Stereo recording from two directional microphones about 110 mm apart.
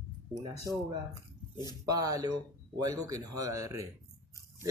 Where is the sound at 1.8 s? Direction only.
30° right (ahead or behind).